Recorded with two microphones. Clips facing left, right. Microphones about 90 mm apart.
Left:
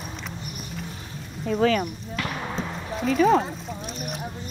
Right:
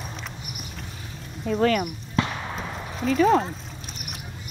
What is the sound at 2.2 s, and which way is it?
Basketball bounce, 25° right (ahead or behind).